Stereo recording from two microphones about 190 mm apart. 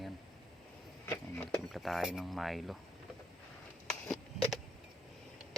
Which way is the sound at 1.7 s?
Centre (ahead or behind).